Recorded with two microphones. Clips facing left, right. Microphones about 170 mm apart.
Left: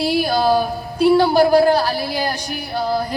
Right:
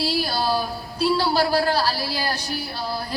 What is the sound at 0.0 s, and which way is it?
A man's voice, 55° left (ahead or behind).